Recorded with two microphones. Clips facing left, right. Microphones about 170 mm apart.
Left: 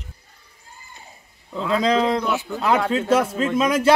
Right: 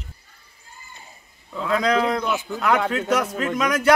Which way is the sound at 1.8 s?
25° left (ahead or behind).